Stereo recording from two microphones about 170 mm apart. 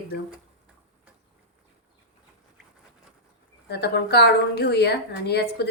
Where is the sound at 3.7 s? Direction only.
75° left (ahead or behind).